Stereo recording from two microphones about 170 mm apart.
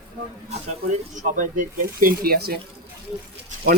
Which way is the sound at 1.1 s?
50° right (ahead or behind).